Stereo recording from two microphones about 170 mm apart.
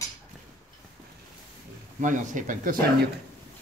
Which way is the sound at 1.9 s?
50° right (ahead or behind).